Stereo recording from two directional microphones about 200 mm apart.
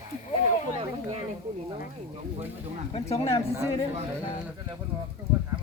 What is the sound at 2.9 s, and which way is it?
Speech, 30° left (ahead or behind).